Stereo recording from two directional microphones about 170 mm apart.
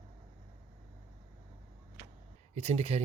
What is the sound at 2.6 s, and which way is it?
Speech, 40° right (ahead or behind).